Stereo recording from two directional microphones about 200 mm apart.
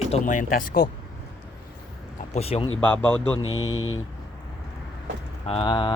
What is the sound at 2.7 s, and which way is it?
Speech, 5° left (ahead or behind).